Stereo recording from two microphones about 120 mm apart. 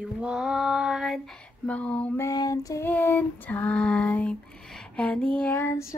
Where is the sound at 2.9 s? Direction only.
15° left (ahead or behind).